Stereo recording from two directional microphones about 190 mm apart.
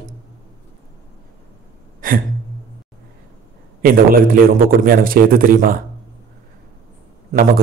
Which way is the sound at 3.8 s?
50° right (ahead or behind).